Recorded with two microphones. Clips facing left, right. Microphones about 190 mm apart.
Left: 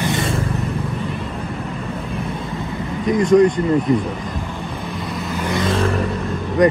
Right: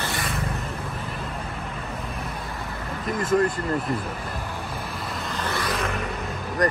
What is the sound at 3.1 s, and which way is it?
Speech, 5° right (ahead or behind).